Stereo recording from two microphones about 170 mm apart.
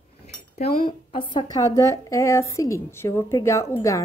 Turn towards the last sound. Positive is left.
turn(degrees=20)  # may be behind; listen again after turning